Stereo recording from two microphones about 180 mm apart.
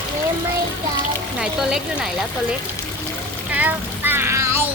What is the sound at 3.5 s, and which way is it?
Child singing, 10° right (ahead or behind).